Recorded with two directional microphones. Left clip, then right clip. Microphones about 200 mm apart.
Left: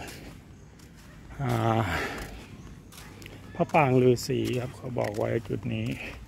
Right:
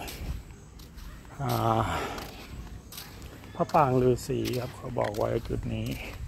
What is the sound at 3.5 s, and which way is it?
Speech, 30° left (ahead or behind).